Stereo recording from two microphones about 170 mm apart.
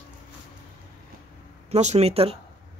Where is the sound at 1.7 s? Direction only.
40° right (ahead or behind).